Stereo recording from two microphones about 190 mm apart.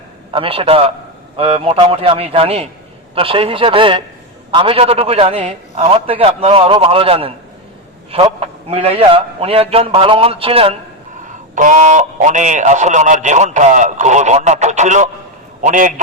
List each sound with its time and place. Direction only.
0.3 s a man's voice: 30° right (ahead or behind)
11.3 s a man's voice: 40° right (ahead or behind)